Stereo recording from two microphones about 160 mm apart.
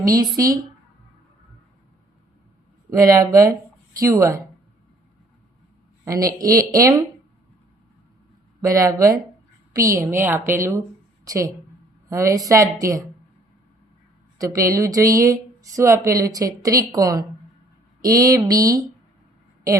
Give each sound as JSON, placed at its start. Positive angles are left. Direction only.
{"t": 0.0, "sound": "speech", "side_deg": -20}
{"t": 2.9, "sound": "speech", "side_deg": -20}
{"t": 6.1, "sound": "speech", "side_deg": -20}
{"t": 8.6, "sound": "a woman's voice", "side_deg": -20}
{"t": 14.3, "sound": "speech", "side_deg": -20}